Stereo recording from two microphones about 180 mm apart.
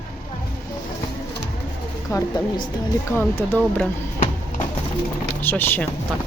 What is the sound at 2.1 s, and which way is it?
Speech, 15° left (ahead or behind).